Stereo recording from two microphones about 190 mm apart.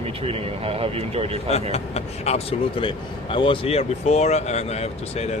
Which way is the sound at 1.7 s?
35° left (ahead or behind).